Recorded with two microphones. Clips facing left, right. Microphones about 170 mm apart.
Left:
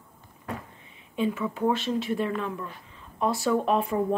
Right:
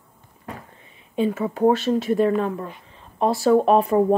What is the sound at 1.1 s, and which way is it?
Speech, 40° right (ahead or behind).